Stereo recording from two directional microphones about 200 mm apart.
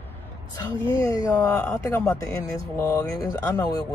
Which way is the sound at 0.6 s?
15° left (ahead or behind).